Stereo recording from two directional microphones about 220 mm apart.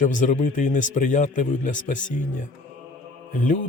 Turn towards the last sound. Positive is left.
turn(degrees=35)  # may be behind; listen again after turning